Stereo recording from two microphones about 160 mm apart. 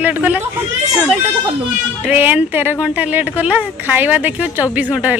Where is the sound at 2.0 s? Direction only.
10° right (ahead or behind).